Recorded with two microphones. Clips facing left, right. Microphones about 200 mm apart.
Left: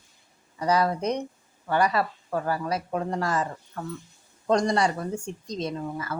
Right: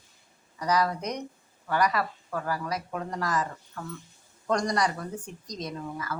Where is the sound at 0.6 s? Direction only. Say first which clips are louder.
Left 3 dB; 30° left (ahead or behind).